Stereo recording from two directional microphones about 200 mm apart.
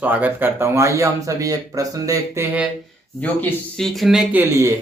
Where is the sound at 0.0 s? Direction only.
10° right (ahead or behind).